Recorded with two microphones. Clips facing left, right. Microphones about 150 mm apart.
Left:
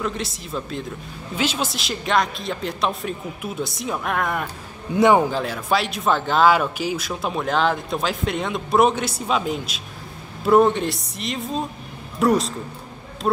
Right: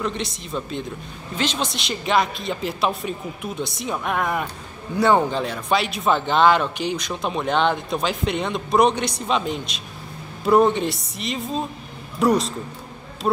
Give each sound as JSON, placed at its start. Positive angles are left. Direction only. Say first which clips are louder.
{"t": 0.0, "sound": "speech", "louder": "even", "side_deg": 0}
{"t": 4.9, "sound": "a man's voice", "louder": "left 2 dB", "side_deg": 15}
{"t": 5.2, "sound": "speech", "louder": "even", "side_deg": 5}